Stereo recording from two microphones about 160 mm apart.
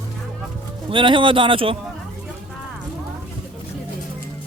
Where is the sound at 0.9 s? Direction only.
30° right (ahead or behind).